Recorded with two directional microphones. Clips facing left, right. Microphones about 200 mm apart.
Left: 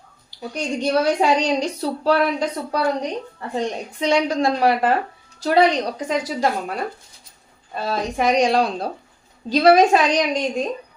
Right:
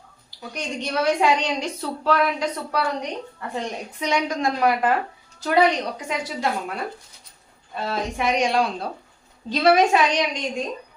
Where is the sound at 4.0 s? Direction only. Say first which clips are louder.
Left 5 dB; 30° left (ahead or behind).